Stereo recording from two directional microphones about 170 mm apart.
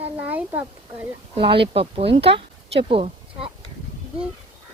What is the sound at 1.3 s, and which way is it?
Speech, 30° right (ahead or behind).